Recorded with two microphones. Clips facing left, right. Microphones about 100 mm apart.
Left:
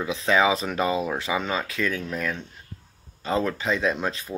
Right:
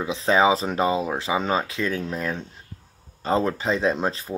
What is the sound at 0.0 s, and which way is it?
Speech, 30° right (ahead or behind).